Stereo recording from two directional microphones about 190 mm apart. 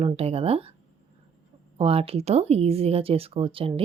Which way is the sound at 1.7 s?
30° right (ahead or behind).